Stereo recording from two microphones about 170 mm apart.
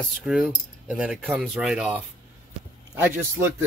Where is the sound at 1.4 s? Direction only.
5° right (ahead or behind).